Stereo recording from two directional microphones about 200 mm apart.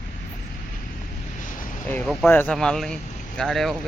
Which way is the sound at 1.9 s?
10° left (ahead or behind).